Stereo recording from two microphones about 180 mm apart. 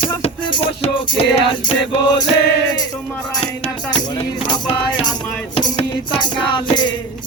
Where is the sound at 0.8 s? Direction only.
30° left (ahead or behind).